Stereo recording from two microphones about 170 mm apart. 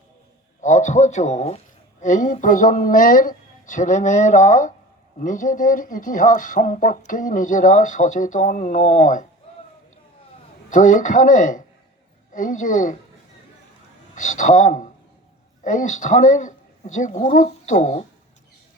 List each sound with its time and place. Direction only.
0.6 s speech: 45° left (ahead or behind)
10.7 s speech: 50° left (ahead or behind)
14.2 s speech: 50° left (ahead or behind)